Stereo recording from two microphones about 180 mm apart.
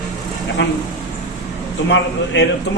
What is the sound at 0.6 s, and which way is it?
Speech, 85° left.